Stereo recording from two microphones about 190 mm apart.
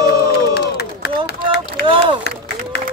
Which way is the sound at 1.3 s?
60° left (ahead or behind).